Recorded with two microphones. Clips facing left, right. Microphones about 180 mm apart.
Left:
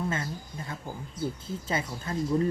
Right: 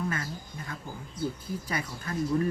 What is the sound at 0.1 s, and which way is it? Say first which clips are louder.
Speech: left 2 dB; 25° left (ahead or behind).